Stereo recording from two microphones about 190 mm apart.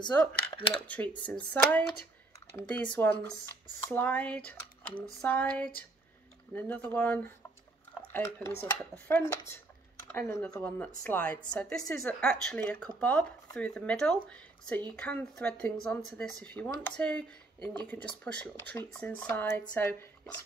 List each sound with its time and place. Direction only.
0.0 s speech: 25° left (ahead or behind)
0.7 s speech: 5° left (ahead or behind)